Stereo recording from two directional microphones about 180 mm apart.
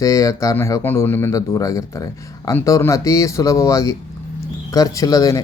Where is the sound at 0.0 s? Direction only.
20° left (ahead or behind).